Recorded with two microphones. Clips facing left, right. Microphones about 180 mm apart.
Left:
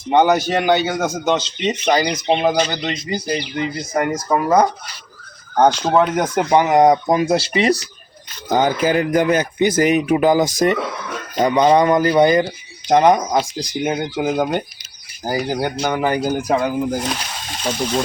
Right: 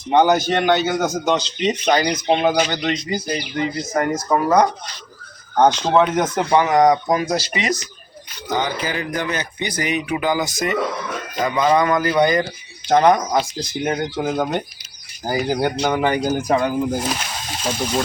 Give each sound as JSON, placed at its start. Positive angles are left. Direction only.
{"t": 0.1, "sound": "speech", "side_deg": 0}
{"t": 8.4, "sound": "speech", "side_deg": 50}
{"t": 12.9, "sound": "speech", "side_deg": 10}
{"t": 13.8, "sound": "speech", "side_deg": 5}